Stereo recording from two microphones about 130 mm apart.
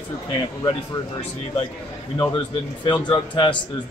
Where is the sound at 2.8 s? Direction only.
35° left (ahead or behind).